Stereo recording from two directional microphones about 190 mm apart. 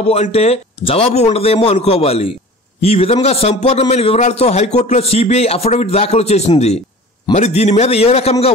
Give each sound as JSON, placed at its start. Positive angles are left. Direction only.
{"t": 0.0, "sound": "a man's voice", "side_deg": 35}